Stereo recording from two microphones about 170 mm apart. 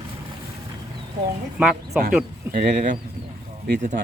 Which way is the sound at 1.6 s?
5° right (ahead or behind).